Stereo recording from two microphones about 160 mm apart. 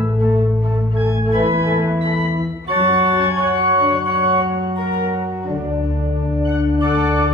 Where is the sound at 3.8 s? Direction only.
30° right (ahead or behind).